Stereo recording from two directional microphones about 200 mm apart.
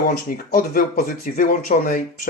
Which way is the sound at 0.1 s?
45° left (ahead or behind).